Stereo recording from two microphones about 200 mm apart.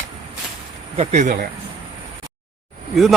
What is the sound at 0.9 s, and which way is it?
Speech, 35° right (ahead or behind).